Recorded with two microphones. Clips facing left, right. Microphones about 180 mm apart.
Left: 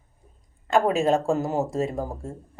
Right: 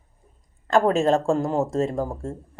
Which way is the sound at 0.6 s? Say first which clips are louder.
Right 2 dB; 5° left (ahead or behind).